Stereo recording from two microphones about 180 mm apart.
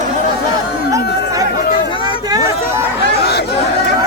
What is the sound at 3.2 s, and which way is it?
Chatter, 65° left (ahead or behind).